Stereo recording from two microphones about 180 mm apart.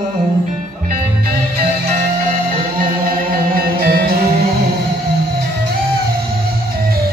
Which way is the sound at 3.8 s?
55° right (ahead or behind).